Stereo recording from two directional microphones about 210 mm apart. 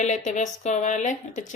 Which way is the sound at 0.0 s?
35° left (ahead or behind).